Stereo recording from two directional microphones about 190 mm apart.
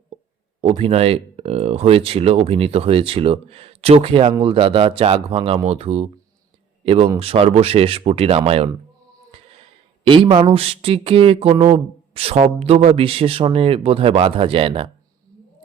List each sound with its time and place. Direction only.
0.6 s speech: 30° right (ahead or behind)
10.0 s speech: 25° right (ahead or behind)